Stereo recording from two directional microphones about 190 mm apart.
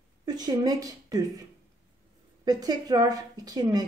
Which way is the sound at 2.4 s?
20° right (ahead or behind).